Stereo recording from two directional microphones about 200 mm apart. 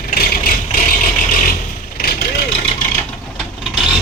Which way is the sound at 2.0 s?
50° left (ahead or behind).